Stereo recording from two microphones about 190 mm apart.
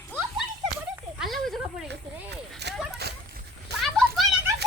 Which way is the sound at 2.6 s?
60° right (ahead or behind).